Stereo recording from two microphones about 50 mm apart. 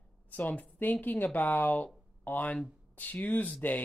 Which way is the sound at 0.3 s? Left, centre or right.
Left.